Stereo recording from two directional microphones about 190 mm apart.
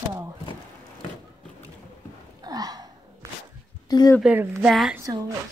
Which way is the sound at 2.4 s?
20° right (ahead or behind).